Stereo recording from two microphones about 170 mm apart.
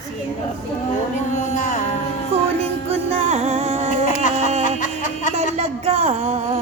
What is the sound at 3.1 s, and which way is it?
Music, 35° right (ahead or behind).